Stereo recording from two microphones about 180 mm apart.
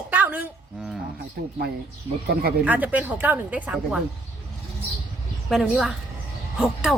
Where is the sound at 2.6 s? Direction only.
10° right (ahead or behind).